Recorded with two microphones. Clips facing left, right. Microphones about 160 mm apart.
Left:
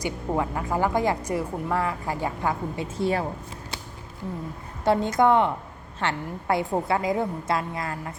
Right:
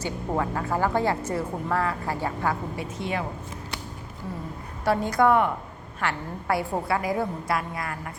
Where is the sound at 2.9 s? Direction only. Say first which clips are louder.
Left 6 dB; 35° left (ahead or behind).